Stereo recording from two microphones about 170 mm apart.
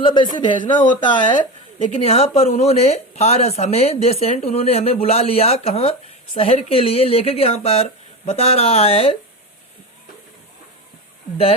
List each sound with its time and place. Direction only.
0.0 s a woman's voice: 30° left (ahead or behind)